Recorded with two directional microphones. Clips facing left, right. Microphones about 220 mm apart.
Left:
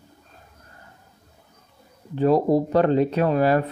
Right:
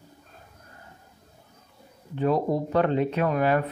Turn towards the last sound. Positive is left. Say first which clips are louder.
# left 4 dB
turn(degrees=35)  # may be behind; listen again after turning